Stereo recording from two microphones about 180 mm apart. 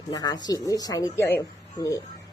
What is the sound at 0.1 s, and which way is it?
Speech, 20° left (ahead or behind).